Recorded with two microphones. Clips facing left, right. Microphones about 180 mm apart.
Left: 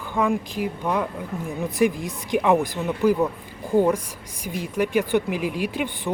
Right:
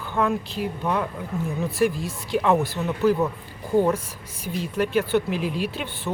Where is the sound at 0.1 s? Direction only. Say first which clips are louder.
Left 1 dB; 10° left (ahead or behind).